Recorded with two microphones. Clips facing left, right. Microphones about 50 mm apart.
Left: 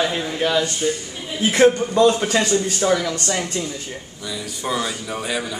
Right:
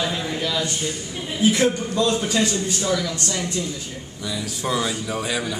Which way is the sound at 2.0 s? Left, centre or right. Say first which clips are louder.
Left 4 dB; left.